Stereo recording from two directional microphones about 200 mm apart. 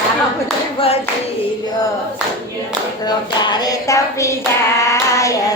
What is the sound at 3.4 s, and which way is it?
Child singing, 20° left (ahead or behind).